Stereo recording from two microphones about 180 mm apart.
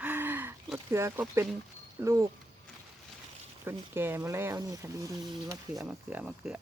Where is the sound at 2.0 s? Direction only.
15° right (ahead or behind).